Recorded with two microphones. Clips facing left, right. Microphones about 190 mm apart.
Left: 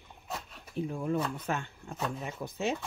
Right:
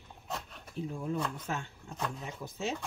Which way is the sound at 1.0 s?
55° left (ahead or behind).